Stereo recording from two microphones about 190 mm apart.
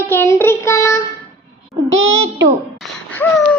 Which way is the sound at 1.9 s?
85° right.